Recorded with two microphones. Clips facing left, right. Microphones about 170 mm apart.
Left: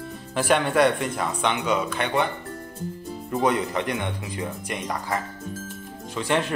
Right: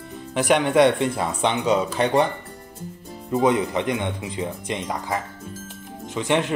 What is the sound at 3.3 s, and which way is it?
Speech, 20° right (ahead or behind).